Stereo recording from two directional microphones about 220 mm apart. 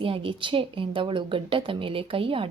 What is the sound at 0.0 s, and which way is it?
A woman's voice, 25° right (ahead or behind).